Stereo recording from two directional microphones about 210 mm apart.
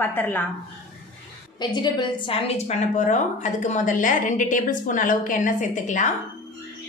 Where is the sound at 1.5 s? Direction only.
20° left (ahead or behind); by 6.1 s 35° left (ahead or behind).